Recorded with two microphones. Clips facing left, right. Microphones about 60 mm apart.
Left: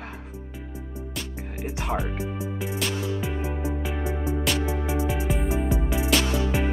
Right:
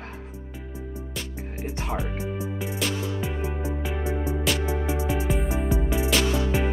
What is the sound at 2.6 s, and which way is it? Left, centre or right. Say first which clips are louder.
Music: left 1 dB; centre.